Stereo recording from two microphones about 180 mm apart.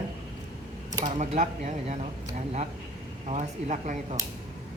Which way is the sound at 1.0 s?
45° right (ahead or behind).